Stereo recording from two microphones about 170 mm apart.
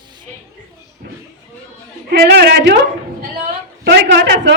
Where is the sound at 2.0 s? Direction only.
75° right (ahead or behind).